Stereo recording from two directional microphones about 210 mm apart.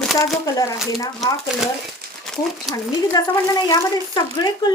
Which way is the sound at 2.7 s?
Centre (ahead or behind).